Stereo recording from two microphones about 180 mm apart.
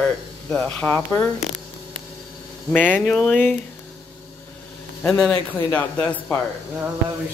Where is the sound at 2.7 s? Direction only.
10° left (ahead or behind).